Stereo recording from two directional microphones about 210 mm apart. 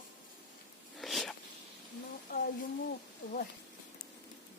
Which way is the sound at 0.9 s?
Centre (ahead or behind).